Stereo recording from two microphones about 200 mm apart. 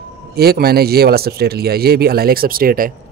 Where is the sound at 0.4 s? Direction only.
50° right (ahead or behind).